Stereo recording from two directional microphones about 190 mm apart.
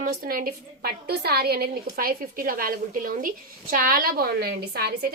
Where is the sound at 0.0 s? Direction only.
50° right (ahead or behind).